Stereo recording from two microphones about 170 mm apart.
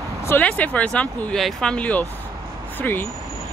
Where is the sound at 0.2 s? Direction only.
10° left (ahead or behind).